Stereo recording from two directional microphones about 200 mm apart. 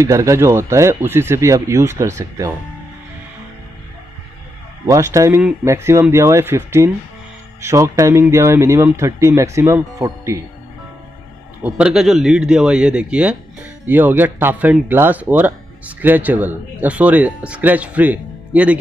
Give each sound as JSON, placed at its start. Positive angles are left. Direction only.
{"t": 0.0, "sound": "speech", "side_deg": -15}
{"t": 4.8, "sound": "speech", "side_deg": -15}
{"t": 11.6, "sound": "a man's voice", "side_deg": -5}